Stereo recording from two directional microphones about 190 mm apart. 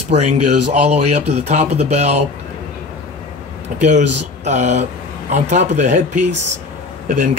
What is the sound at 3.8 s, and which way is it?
Speech, 40° right (ahead or behind).